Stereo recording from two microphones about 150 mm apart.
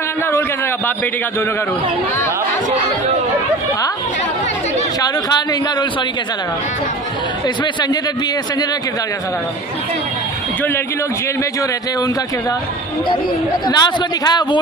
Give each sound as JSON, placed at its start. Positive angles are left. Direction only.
{"t": 5.0, "sound": "a man's voice", "side_deg": 25}
{"t": 13.1, "sound": "a man's voice", "side_deg": 30}